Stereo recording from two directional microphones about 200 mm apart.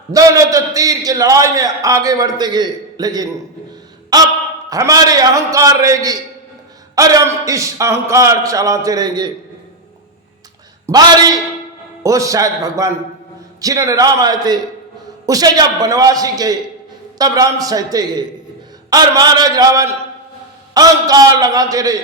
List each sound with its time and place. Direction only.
0.1 s a man's voice: 15° right (ahead or behind)
10.8 s a man's voice: 20° right (ahead or behind)